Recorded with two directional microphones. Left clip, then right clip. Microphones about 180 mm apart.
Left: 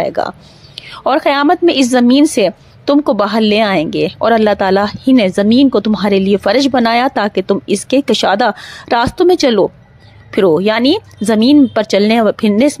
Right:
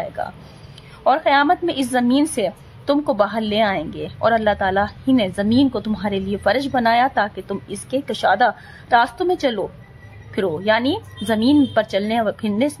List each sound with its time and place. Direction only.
0.0 s a woman's voice: 40° left (ahead or behind)